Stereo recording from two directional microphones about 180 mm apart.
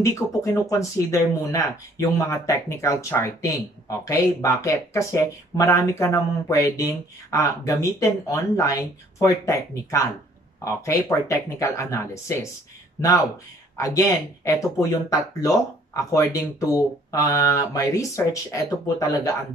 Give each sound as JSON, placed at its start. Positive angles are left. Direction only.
{"t": 0.0, "sound": "speech", "side_deg": 15}
{"t": 13.7, "sound": "speech", "side_deg": 15}